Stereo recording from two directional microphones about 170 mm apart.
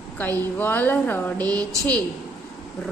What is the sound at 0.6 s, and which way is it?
Speech, 10° left (ahead or behind).